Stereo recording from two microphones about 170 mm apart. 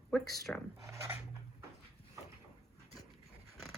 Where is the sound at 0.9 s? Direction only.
15° right (ahead or behind).